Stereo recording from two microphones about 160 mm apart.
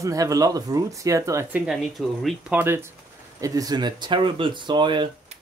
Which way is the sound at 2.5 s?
15° right (ahead or behind).